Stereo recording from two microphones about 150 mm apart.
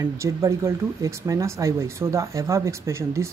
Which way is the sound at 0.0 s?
20° right (ahead or behind).